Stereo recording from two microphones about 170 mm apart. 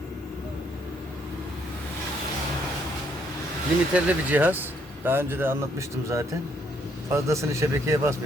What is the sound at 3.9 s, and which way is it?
Speech, 10° right (ahead or behind).